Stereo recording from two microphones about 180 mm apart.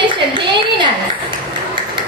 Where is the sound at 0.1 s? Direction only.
25° right (ahead or behind).